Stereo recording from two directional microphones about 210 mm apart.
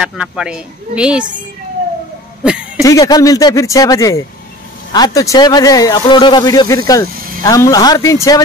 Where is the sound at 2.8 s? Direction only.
15° left (ahead or behind).